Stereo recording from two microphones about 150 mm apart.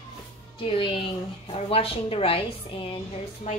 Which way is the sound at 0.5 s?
35° left (ahead or behind).